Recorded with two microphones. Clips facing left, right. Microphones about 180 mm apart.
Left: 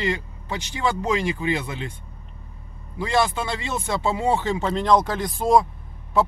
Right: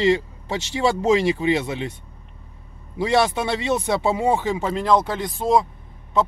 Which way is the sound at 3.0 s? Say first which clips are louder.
Right 3 dB; 20° right (ahead or behind).